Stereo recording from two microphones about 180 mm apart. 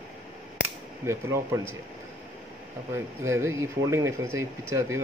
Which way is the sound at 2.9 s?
15° right (ahead or behind).